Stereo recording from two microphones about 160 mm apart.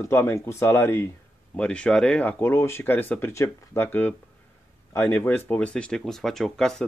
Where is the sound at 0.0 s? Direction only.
15° left (ahead or behind).